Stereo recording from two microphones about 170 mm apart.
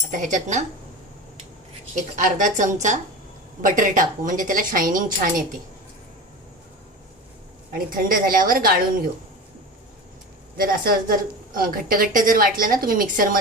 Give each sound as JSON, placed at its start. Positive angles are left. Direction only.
{"t": 0.1, "sound": "a woman's voice", "side_deg": -50}
{"t": 2.0, "sound": "a woman's voice", "side_deg": -45}
{"t": 7.7, "sound": "a woman's voice", "side_deg": -55}
{"t": 10.6, "sound": "a woman's voice", "side_deg": -55}